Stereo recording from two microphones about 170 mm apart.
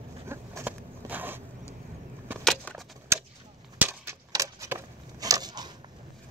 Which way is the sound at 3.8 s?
15° right (ahead or behind).